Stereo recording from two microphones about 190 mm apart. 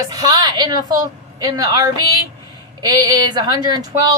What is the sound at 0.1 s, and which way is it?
A woman's voice, 20° right (ahead or behind).